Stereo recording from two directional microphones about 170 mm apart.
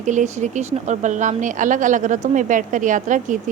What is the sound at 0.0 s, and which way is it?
Speech, 45° right (ahead or behind).